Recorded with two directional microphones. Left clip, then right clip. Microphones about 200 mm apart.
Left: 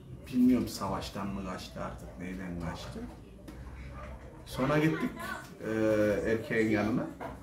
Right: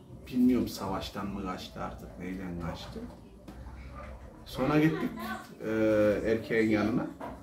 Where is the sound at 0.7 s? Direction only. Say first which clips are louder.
Even; 5° left (ahead or behind).